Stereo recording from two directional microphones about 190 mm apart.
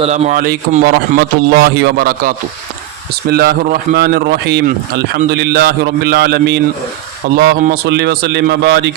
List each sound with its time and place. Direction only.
0.0 s a man's voice: 40° right (ahead or behind); by 6.6 s 60° right (ahead or behind)
7.6 s speech: 60° right (ahead or behind)